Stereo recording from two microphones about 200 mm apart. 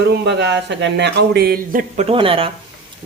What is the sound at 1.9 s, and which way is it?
Speech, 30° right (ahead or behind).